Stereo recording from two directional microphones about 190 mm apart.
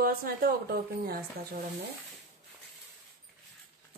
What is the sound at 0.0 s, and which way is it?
Speech, 50° right (ahead or behind).